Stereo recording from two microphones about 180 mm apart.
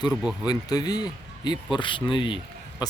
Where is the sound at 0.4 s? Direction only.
20° left (ahead or behind).